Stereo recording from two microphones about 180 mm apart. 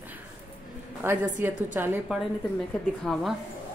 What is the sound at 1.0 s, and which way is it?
Speech, 10° right (ahead or behind).